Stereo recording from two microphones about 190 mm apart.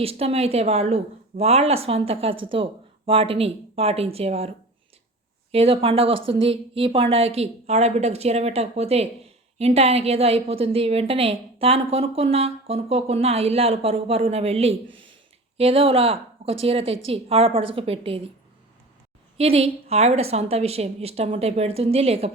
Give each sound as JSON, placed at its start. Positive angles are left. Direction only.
{"t": 0.0, "sound": "speech", "side_deg": -30}
{"t": 19.4, "sound": "speech", "side_deg": -30}